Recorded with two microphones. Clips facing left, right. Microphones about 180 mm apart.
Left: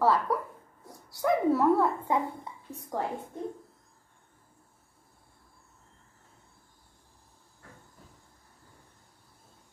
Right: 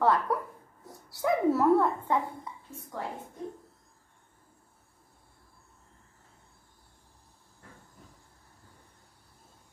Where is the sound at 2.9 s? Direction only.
45° left (ahead or behind).